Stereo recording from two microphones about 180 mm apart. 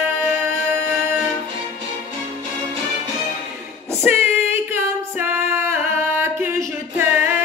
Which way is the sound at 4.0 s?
15° right (ahead or behind).